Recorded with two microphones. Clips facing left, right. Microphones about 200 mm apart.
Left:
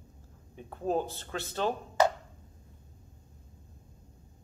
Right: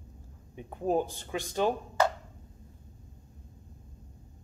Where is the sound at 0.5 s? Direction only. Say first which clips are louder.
Right 2 dB; 15° right (ahead or behind).